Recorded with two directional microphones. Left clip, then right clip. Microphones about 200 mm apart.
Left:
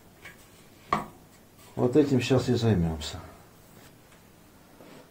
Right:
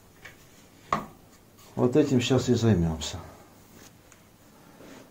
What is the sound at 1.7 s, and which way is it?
A man's voice, 30° right (ahead or behind).